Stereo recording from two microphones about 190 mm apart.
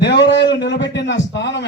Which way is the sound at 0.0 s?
65° left (ahead or behind).